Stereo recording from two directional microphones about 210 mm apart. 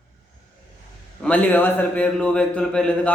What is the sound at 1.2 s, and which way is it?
A man's voice, 5° left (ahead or behind).